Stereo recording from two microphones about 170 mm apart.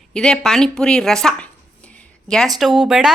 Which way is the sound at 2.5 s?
Centre (ahead or behind).